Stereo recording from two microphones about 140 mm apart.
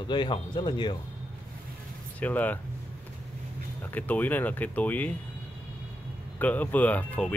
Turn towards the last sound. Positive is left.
turn(degrees=10)  # may be behind; listen again after turning